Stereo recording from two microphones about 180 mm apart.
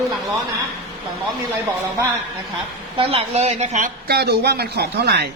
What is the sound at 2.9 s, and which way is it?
Speech, 30° right (ahead or behind).